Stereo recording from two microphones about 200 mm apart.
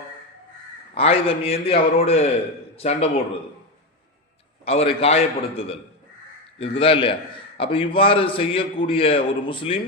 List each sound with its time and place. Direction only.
0.9 s a man's voice: 30° left (ahead or behind)
4.6 s a man's voice: 30° left (ahead or behind)